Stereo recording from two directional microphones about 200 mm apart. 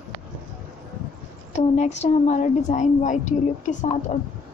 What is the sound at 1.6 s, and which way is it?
A woman's voice, 35° left (ahead or behind).